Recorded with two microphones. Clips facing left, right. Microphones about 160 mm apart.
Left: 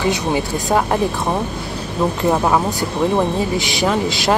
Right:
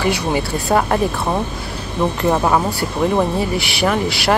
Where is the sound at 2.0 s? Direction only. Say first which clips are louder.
Even; 5° left (ahead or behind).